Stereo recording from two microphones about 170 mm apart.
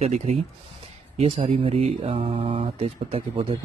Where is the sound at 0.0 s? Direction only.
40° right (ahead or behind).